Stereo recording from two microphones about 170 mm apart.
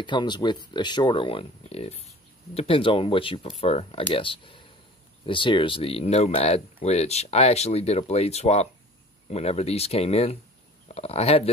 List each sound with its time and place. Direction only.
0.0 s speech: 25° left (ahead or behind)